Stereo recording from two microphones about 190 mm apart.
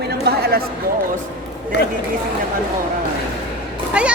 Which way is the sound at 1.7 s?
65° left (ahead or behind).